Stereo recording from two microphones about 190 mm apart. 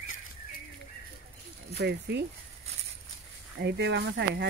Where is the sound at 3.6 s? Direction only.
65° right (ahead or behind).